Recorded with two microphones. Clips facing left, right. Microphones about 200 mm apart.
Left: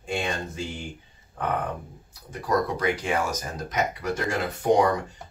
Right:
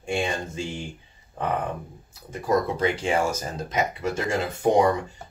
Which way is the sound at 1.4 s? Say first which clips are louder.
Right 1 dB; 25° right (ahead or behind).